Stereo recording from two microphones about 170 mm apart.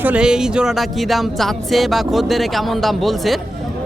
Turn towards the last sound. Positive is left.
turn(degrees=0)  # may be behind; listen again after turning